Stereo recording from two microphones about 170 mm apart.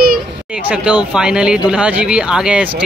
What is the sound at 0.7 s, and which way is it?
Speech, 5° right (ahead or behind).